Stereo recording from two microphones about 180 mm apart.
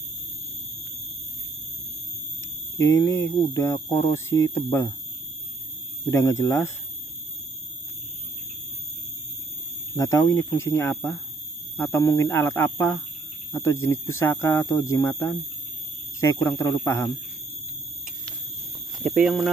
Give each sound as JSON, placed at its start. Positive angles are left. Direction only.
{"t": 3.0, "sound": "speech", "side_deg": 15}
{"t": 6.0, "sound": "speech", "side_deg": 15}
{"t": 9.9, "sound": "speech", "side_deg": 15}
{"t": 19.0, "sound": "speech", "side_deg": -5}